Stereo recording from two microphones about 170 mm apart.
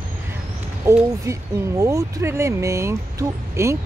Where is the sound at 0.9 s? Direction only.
15° right (ahead or behind).